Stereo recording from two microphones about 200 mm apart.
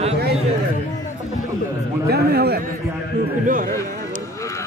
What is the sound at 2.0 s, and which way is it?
Speech, 55° right (ahead or behind).